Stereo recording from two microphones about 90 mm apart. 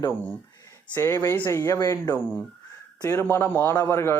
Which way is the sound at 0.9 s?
25° left (ahead or behind).